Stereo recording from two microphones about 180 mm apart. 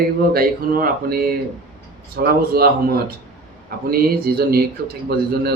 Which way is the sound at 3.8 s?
55° right (ahead or behind).